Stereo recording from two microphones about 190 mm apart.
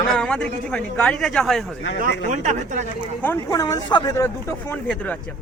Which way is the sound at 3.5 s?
20° left (ahead or behind).